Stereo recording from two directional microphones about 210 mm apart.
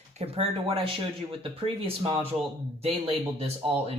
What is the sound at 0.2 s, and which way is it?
Speech, 25° right (ahead or behind).